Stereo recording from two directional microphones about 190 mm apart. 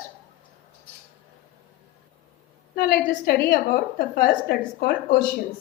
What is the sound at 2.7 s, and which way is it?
A woman's voice, 55° left (ahead or behind).